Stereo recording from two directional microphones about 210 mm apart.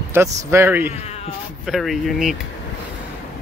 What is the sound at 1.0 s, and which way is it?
Cat, 30° left (ahead or behind).